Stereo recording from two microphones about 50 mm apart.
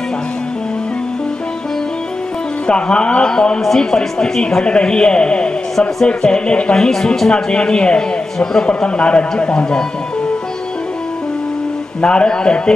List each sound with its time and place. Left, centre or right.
2.6 s a man's voice: centre
12.0 s a man's voice: centre